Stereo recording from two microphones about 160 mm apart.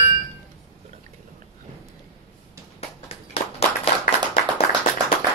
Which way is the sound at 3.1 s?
35° left (ahead or behind).